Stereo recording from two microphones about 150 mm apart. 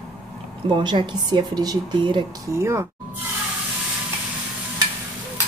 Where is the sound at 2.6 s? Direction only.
20° right (ahead or behind).